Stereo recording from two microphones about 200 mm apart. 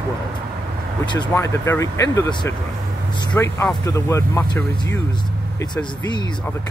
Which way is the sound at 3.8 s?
15° left (ahead or behind).